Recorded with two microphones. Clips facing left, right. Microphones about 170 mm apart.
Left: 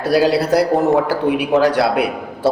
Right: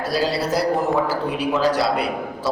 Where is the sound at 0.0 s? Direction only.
65° left (ahead or behind).